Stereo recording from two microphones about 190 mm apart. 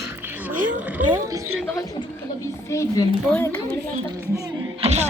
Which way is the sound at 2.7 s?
15° left (ahead or behind).